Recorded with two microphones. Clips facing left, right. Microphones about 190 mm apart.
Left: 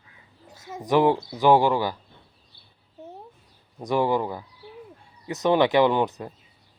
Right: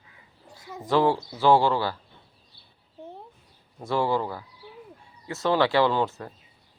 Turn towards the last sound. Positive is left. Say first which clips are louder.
# left 3 dB
turn(degrees=15)  # may be behind; listen again after turning